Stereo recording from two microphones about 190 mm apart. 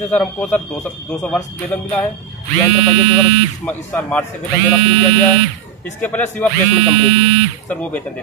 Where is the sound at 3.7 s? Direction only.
10° left (ahead or behind).